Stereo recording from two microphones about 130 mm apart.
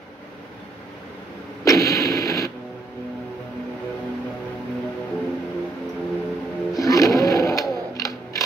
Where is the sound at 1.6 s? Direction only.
25° left (ahead or behind).